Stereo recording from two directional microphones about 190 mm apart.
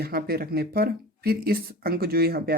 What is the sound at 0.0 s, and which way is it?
Speech, 55° right (ahead or behind).